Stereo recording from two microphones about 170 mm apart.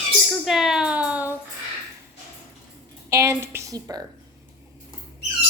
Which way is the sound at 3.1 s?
15° right (ahead or behind).